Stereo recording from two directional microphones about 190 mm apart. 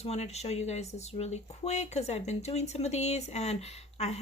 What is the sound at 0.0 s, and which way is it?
Speech, 35° left (ahead or behind).